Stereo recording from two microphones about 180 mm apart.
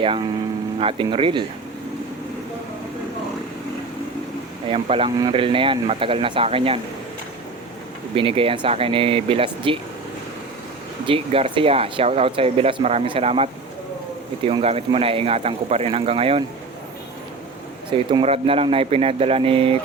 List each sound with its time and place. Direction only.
0.8 s speech: 30° right (ahead or behind)
4.7 s speech: 30° right (ahead or behind)
8.1 s speech: 30° right (ahead or behind)
11.0 s speech: 30° right (ahead or behind)
17.9 s speech: 30° right (ahead or behind)